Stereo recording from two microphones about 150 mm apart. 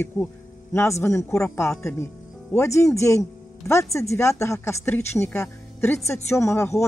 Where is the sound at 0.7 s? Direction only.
20° left (ahead or behind).